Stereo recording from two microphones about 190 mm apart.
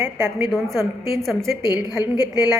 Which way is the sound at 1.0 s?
15° right (ahead or behind).